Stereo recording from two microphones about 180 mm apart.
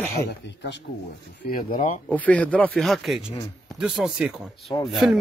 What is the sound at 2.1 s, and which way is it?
Speech, 10° left (ahead or behind).